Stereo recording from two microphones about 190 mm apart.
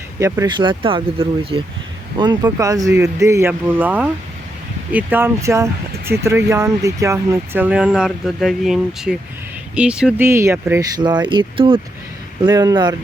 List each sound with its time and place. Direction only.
0.2 s speech: 15° right (ahead or behind)